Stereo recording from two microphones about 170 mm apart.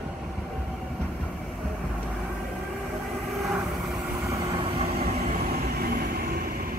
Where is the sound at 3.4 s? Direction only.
Centre (ahead or behind).